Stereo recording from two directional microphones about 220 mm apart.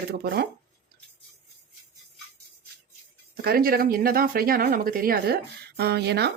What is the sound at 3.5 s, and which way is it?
Speech, 40° right (ahead or behind).